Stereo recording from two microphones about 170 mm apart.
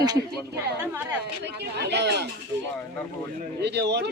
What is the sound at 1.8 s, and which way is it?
Speech, 80° right.